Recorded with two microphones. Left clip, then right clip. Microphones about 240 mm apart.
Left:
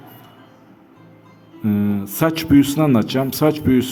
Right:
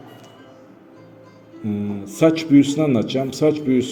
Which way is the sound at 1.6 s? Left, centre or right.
Left.